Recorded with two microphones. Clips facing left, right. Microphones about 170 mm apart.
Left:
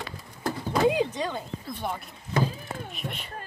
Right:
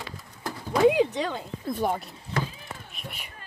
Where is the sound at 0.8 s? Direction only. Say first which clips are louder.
Right 5 dB; 65° right (ahead or behind).